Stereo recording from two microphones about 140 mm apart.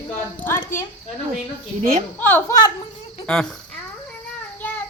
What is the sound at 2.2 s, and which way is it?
A woman's voice, 15° left (ahead or behind).